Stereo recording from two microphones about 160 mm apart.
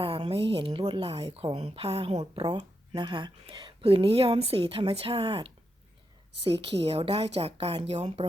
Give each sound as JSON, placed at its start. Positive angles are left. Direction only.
{"t": 0.0, "sound": "speech", "side_deg": -35}
{"t": 2.4, "sound": "speech", "side_deg": -25}
{"t": 6.8, "sound": "speech", "side_deg": -35}